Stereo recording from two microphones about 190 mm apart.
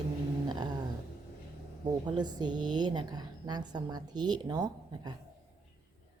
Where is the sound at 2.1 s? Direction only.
20° right (ahead or behind).